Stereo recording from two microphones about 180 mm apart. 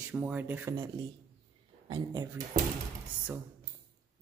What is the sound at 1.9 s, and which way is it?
Speech, 20° right (ahead or behind).